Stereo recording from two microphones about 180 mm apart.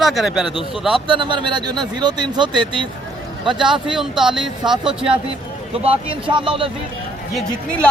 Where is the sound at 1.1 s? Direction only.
25° right (ahead or behind).